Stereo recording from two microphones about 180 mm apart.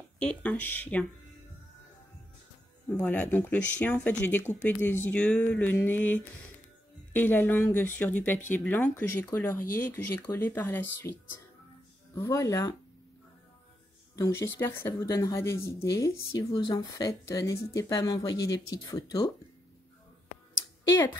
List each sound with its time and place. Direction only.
0.2 s speech: 5° left (ahead or behind)
2.9 s speech: 5° left (ahead or behind)
14.1 s speech: 15° left (ahead or behind)